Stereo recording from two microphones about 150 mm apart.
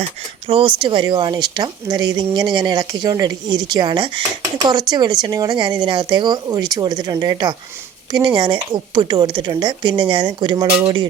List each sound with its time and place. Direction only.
0.4 s a woman's voice: 35° right (ahead or behind)